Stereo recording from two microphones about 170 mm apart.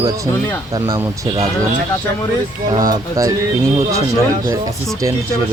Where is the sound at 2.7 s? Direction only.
20° right (ahead or behind).